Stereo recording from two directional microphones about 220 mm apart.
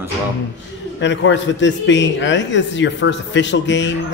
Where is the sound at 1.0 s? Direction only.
55° left (ahead or behind).